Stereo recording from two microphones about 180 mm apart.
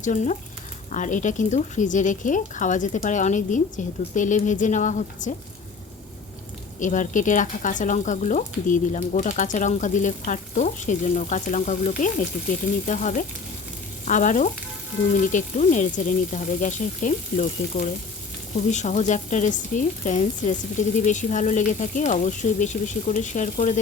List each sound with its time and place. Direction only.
0.0 s speech: 45° left (ahead or behind)
6.7 s speech: 45° left (ahead or behind)